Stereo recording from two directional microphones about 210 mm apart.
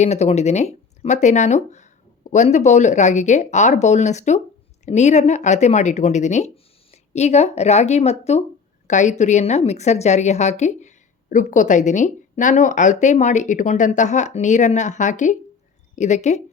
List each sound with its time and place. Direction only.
0.0 s a woman's voice: 30° left (ahead or behind)